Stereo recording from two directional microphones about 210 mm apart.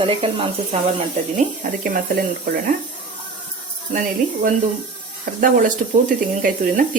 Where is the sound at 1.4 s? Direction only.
40° right (ahead or behind).